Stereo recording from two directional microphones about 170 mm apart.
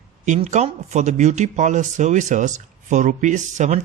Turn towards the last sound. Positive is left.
turn(degrees=-45)  # may be behind; listen again after turning